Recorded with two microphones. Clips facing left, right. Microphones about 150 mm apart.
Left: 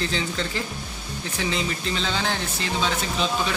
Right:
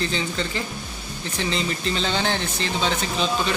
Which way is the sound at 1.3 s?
5° left (ahead or behind).